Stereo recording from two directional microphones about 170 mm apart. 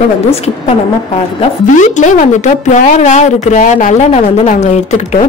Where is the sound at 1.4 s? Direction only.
45° left (ahead or behind).